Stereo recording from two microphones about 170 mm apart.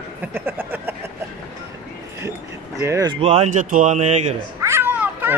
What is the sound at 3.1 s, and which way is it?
Speech, 35° right (ahead or behind).